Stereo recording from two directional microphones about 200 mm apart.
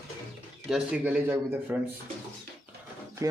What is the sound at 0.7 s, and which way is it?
Speech, 5° right (ahead or behind).